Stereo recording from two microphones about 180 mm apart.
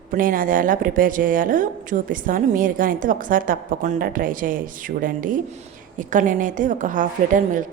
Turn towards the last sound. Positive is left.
turn(degrees=-45)  # may be behind; listen again after turning